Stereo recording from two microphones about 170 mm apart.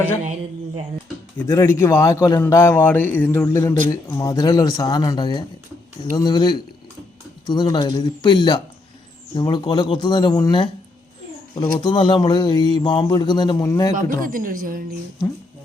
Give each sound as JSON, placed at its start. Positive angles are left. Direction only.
{"t": 1.4, "sound": "a man's voice", "side_deg": 15}
{"t": 14.2, "sound": "speech", "side_deg": -55}